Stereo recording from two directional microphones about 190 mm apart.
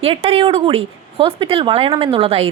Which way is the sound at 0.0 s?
30° right (ahead or behind).